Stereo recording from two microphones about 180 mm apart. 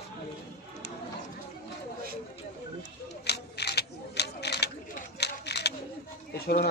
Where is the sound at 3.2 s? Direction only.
65° left (ahead or behind).